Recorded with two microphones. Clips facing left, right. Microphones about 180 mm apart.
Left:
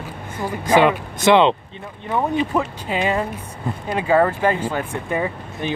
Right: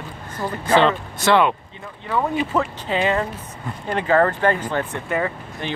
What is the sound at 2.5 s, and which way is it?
Speech, 10° left (ahead or behind).